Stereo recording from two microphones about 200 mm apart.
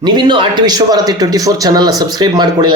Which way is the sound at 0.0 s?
20° right (ahead or behind).